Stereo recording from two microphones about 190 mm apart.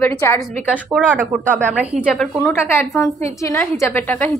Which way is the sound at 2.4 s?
10° left (ahead or behind).